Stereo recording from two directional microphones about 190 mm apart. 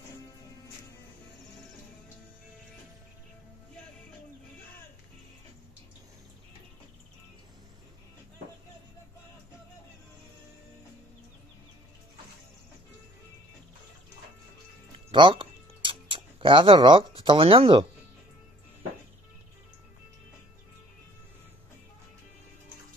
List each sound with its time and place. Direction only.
15.0 s music: 25° right (ahead or behind)